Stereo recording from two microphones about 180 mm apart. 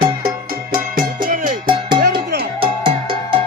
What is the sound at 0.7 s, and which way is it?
Music, 50° right (ahead or behind).